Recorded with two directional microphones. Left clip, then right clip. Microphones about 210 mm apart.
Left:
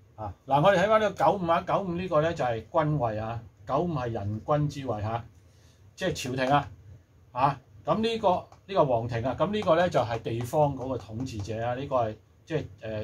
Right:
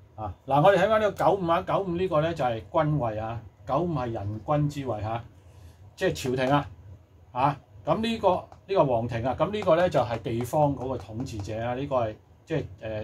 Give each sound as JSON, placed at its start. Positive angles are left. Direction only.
{"t": 0.5, "sound": "a man's voice", "side_deg": -20}